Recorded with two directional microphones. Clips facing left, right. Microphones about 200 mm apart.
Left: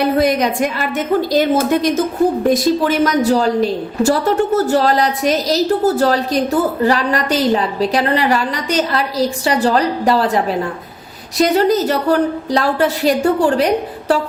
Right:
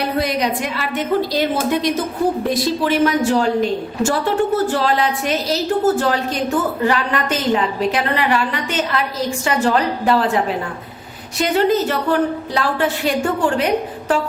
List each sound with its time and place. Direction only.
0.0 s a woman's voice: 50° left (ahead or behind)